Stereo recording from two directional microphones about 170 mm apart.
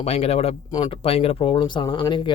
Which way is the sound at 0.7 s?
25° left (ahead or behind).